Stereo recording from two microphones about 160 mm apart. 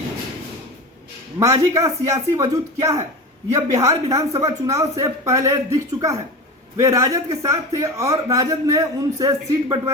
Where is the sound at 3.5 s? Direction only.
20° right (ahead or behind).